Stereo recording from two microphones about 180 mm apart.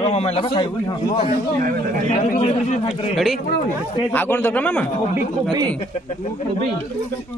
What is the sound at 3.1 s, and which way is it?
Speech, centre (ahead or behind).